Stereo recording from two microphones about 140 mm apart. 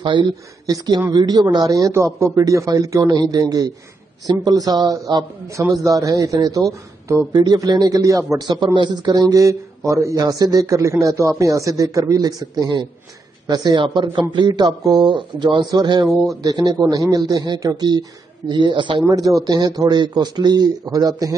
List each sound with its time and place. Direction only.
0.0 s speech: 35° right (ahead or behind)